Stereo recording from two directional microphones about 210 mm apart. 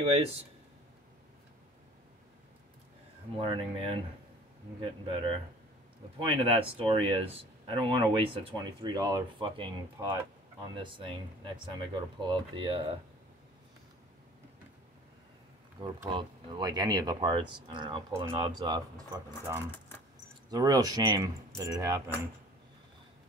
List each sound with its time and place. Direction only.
3.3 s speech: 25° right (ahead or behind)
5.1 s speech: 25° right (ahead or behind)
15.8 s speech: 20° right (ahead or behind)